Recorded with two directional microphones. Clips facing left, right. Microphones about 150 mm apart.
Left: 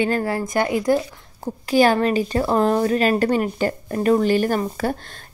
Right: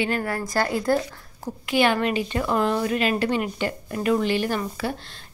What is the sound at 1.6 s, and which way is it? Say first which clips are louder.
A woman's voice: left 5 dB; 40° left (ahead or behind).